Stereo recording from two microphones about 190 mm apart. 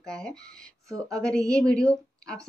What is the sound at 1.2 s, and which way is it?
Speech, 5° left (ahead or behind).